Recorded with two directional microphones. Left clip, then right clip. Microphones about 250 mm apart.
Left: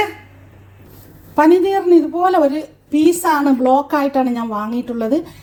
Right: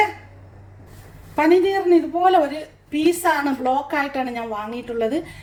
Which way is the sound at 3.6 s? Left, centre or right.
Left.